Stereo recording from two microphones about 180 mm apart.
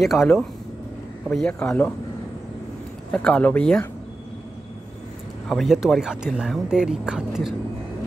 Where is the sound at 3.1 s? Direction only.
5° left (ahead or behind).